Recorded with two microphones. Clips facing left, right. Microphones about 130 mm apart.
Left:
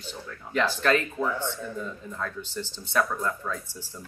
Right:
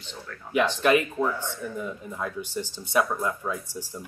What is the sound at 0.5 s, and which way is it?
Speech, 10° right (ahead or behind).